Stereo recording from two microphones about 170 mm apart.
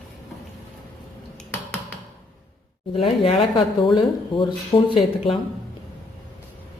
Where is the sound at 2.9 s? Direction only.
35° left (ahead or behind).